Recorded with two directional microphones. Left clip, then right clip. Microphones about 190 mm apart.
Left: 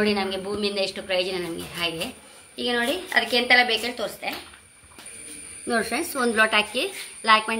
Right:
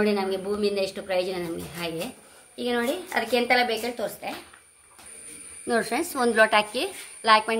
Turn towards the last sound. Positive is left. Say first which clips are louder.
# even
turn(degrees=-60)  # may be behind; listen again after turning